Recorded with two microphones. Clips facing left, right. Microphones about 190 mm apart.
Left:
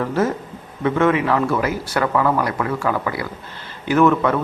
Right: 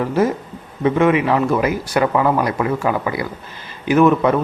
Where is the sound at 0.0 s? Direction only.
15° right (ahead or behind).